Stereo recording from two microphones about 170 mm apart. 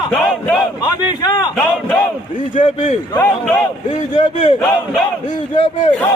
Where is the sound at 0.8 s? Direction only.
25° left (ahead or behind).